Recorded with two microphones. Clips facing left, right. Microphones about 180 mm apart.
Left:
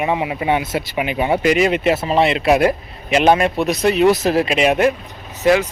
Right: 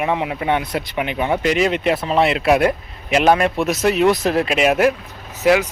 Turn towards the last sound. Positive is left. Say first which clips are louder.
# left 1 dB
turn(degrees=-10)  # may be behind; listen again after turning